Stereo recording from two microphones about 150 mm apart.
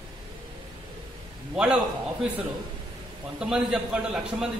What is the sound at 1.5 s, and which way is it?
Speech, 5° right (ahead or behind).